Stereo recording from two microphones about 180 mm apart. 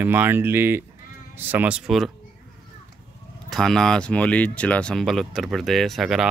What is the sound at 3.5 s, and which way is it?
Speech, centre (ahead or behind).